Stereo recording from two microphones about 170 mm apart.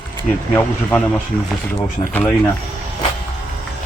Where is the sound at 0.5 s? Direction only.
10° left (ahead or behind).